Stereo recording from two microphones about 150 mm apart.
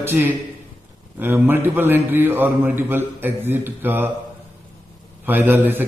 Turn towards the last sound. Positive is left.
turn(degrees=-15)  # may be behind; listen again after turning